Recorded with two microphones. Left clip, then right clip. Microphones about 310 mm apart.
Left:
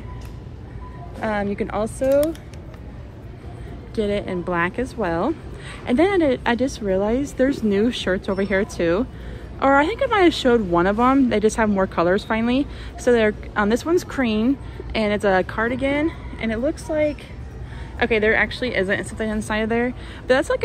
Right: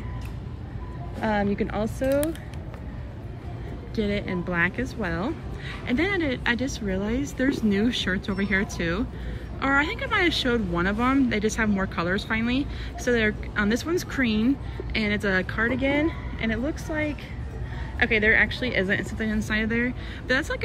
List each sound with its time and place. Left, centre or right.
1.2 s a woman's voice: centre
3.9 s a woman's voice: centre